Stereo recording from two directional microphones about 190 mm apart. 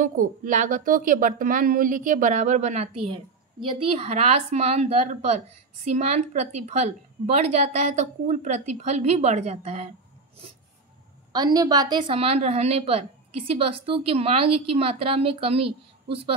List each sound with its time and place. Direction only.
0.0 s a woman's voice: 45° right (ahead or behind)
3.1 s a woman's voice: 25° right (ahead or behind)
11.3 s speech: 20° right (ahead or behind)